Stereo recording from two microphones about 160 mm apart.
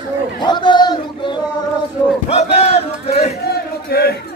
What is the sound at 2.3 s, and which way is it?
Battle cry, 40° left (ahead or behind).